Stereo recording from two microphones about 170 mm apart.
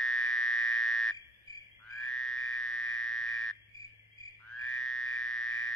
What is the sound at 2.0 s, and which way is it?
Frog, 5° left (ahead or behind).